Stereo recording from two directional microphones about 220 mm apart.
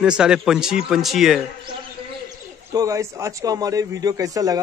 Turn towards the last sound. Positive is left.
turn(degrees=-15)  # may be behind; listen again after turning